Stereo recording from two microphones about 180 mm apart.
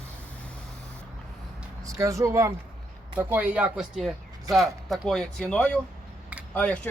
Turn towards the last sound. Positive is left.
turn(degrees=10)  # may be behind; listen again after turning